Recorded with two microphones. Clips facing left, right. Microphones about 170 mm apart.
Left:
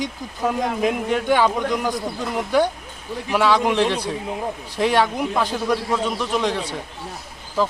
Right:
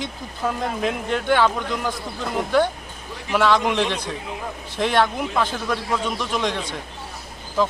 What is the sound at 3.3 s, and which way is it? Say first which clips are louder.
Speech: left 1 dB; 10° left (ahead or behind).